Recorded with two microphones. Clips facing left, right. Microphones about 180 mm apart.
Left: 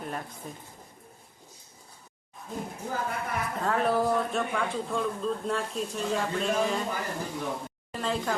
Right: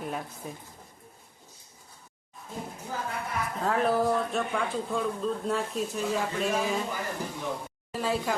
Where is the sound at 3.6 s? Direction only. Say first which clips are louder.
Right 1 dB; centre (ahead or behind).